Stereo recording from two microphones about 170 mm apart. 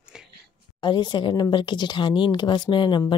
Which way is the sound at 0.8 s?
25° left (ahead or behind).